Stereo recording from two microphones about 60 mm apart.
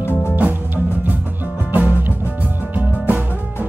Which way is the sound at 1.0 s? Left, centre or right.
Right.